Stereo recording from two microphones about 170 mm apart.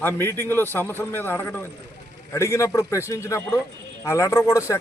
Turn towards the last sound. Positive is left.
turn(degrees=15)  # may be behind; listen again after turning